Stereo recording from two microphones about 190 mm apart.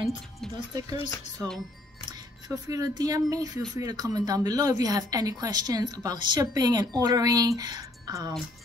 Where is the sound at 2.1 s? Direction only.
20° right (ahead or behind).